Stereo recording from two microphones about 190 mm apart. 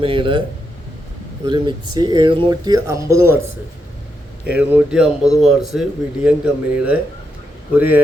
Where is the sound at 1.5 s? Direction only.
20° right (ahead or behind).